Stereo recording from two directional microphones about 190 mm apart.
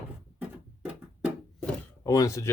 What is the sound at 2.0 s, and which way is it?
Speech, 15° left (ahead or behind).